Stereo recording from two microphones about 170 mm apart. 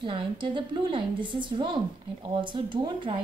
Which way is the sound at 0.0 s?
30° right (ahead or behind).